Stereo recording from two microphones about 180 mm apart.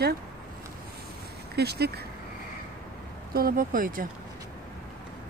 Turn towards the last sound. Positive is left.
turn(degrees=-50)  # may be behind; listen again after turning